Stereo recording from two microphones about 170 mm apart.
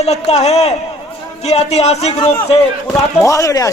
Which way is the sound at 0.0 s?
40° left (ahead or behind).